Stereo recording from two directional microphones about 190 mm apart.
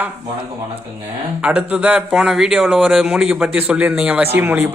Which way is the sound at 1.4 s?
5° right (ahead or behind).